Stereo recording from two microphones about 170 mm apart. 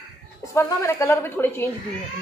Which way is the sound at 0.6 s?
15° left (ahead or behind).